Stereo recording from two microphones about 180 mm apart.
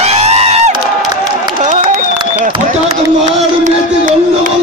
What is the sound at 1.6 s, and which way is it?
Run, 45° right (ahead or behind).